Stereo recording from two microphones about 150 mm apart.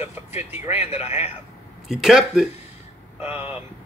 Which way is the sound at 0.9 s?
15° right (ahead or behind).